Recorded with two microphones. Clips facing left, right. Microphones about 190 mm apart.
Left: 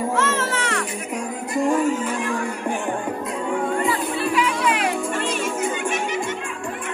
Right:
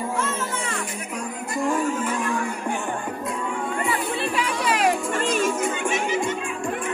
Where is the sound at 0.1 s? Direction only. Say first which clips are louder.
Left 4 dB; 90° left.